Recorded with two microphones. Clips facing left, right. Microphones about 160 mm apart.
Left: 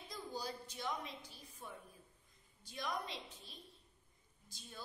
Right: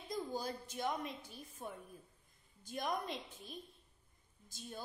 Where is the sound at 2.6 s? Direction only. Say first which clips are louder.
Right 4 dB; 50° right (ahead or behind).